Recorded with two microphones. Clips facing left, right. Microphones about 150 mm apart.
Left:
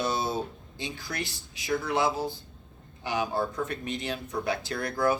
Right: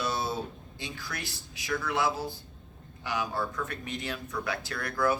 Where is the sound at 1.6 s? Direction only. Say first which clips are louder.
Left 3 dB; 30° left (ahead or behind).